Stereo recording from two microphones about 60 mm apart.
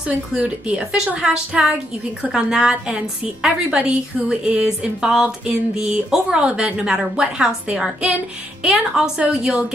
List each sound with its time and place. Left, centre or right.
0.4 s a woman's voice: centre